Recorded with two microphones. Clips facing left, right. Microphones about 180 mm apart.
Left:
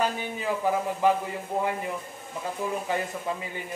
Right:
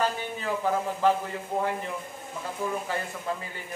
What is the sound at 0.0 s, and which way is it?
A man's voice, 10° left (ahead or behind).